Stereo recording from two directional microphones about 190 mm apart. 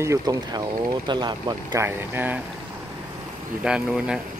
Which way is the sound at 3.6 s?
5° right (ahead or behind).